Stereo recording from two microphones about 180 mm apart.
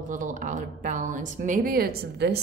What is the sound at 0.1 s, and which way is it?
Speech, 45° right (ahead or behind).